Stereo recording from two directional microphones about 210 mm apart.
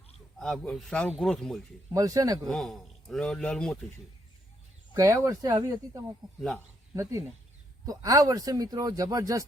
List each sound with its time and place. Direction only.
0.3 s a man's voice: 5° left (ahead or behind)
1.9 s a man's voice: 15° right (ahead or behind)
2.4 s a man's voice: centre (ahead or behind)
4.9 s a man's voice: 15° right (ahead or behind)